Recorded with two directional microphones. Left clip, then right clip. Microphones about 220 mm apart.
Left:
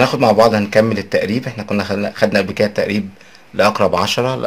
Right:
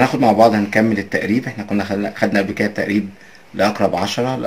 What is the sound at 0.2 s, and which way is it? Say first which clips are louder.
Speech: even; 50° left (ahead or behind).